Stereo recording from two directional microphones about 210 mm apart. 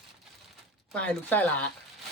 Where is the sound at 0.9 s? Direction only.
5° left (ahead or behind).